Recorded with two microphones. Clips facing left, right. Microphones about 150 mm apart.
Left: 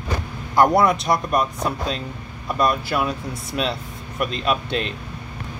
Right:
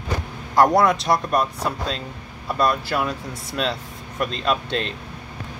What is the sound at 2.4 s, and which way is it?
Speech, 15° left (ahead or behind).